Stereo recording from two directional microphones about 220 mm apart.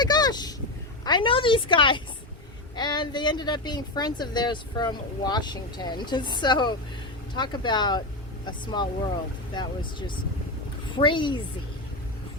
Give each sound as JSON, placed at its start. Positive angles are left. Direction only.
{"t": 0.0, "sound": "a sound", "side_deg": 20}
{"t": 1.0, "sound": "speech", "side_deg": 20}
{"t": 10.9, "sound": "speech", "side_deg": 20}